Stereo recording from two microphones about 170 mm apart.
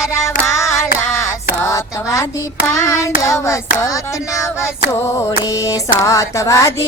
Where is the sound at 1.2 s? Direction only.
15° left (ahead or behind).